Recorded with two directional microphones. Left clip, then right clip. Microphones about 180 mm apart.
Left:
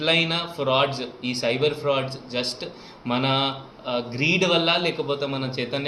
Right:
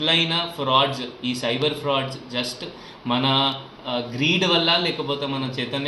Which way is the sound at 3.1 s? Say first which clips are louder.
Right 2 dB; 10° left (ahead or behind).